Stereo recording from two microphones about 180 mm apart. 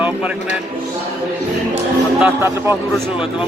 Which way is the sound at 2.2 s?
15° right (ahead or behind).